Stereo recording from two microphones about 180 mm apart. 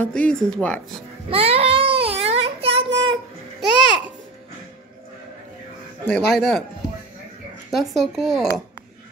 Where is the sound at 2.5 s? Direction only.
35° right (ahead or behind).